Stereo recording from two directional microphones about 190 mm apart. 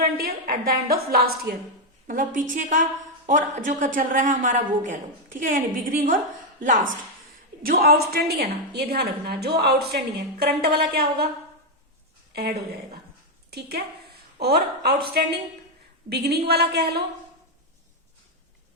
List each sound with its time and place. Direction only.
0.0 s a woman's voice: 50° right (ahead or behind)
12.3 s a woman's voice: 55° right (ahead or behind)